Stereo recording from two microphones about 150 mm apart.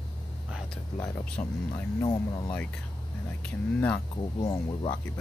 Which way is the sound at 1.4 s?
25° left (ahead or behind).